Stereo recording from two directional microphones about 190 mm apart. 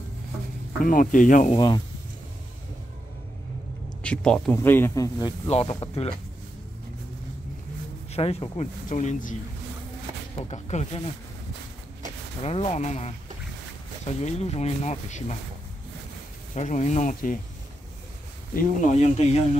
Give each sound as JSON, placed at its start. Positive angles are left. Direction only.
{"t": 0.8, "sound": "speech", "side_deg": 45}
{"t": 4.0, "sound": "speech", "side_deg": 5}
{"t": 5.5, "sound": "speech", "side_deg": 30}
{"t": 8.1, "sound": "speech", "side_deg": 30}
{"t": 12.4, "sound": "speech", "side_deg": 35}
{"t": 16.5, "sound": "speech", "side_deg": 40}
{"t": 18.5, "sound": "speech", "side_deg": 45}